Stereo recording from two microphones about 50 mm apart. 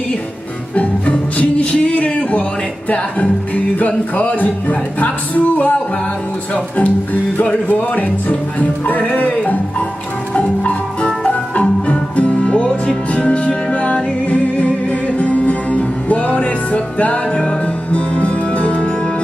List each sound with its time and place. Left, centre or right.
1.4 s music: left
10.3 s music: left